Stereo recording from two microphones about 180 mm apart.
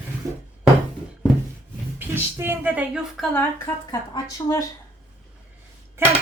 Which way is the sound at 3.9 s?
20° left (ahead or behind).